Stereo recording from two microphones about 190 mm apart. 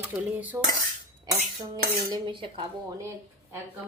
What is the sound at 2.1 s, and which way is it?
Cutlery, 25° right (ahead or behind).